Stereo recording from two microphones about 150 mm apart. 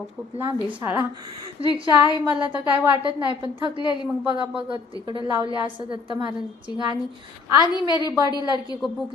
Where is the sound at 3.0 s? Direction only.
35° right (ahead or behind).